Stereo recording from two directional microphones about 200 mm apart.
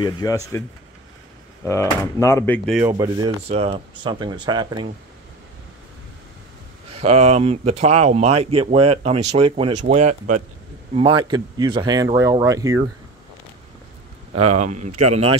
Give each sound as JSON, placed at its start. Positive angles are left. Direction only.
{"t": 0.0, "sound": "speech", "side_deg": 20}
{"t": 1.6, "sound": "speech", "side_deg": 15}
{"t": 2.8, "sound": "speech", "side_deg": -15}
{"t": 3.4, "sound": "speech", "side_deg": -30}
{"t": 6.9, "sound": "speech", "side_deg": -30}
{"t": 11.0, "sound": "speech", "side_deg": -25}
{"t": 14.3, "sound": "speech", "side_deg": -35}